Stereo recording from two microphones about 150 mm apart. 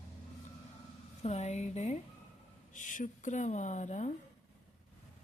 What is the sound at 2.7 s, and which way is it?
Speech, 60° left (ahead or behind).